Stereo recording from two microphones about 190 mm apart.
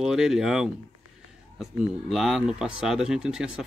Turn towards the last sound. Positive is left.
turn(degrees=-5)  # may be behind; listen again after turning